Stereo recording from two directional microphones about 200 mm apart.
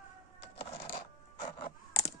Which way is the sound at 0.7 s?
25° left (ahead or behind).